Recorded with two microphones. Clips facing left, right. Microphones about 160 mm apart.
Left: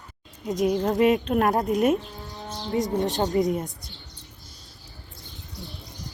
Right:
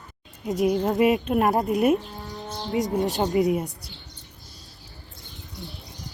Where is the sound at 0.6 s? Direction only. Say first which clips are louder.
Even; centre (ahead or behind).